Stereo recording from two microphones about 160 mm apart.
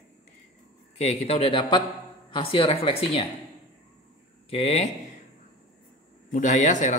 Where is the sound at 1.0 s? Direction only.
45° left (ahead or behind).